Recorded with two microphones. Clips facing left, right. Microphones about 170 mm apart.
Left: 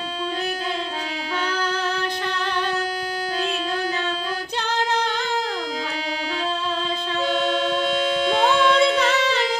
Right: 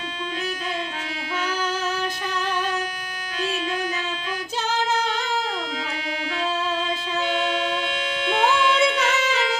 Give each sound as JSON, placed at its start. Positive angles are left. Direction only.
{"t": 1.5, "sound": "female singing", "side_deg": -10}
{"t": 7.2, "sound": "music", "side_deg": 40}